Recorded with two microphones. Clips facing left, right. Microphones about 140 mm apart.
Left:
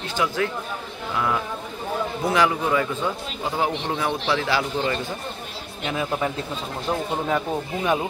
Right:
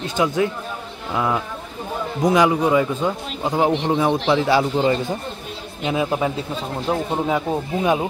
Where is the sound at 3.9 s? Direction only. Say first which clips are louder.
Right 6 dB; 25° right (ahead or behind).